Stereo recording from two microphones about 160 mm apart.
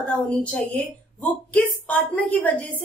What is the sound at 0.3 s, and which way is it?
A woman's voice, 5° left (ahead or behind).